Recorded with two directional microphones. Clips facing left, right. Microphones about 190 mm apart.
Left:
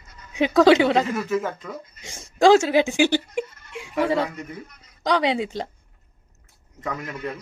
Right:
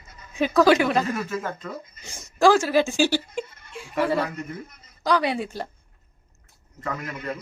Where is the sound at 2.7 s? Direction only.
20° left (ahead or behind).